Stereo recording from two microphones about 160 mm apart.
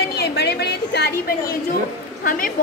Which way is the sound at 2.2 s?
60° left (ahead or behind).